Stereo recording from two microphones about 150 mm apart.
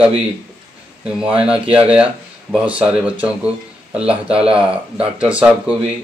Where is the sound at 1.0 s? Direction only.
5° right (ahead or behind).